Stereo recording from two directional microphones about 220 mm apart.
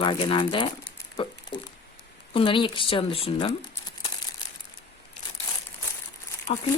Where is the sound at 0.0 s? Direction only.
25° left (ahead or behind).